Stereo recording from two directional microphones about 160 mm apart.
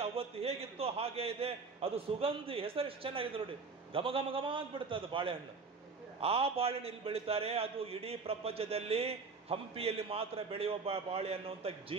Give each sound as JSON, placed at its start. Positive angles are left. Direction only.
{"t": 0.0, "sound": "a man's voice", "side_deg": -35}